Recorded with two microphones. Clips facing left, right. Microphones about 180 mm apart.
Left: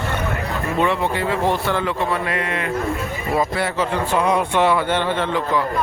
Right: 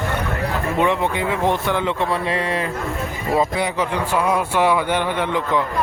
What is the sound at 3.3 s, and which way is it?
A man's voice, 20° right (ahead or behind).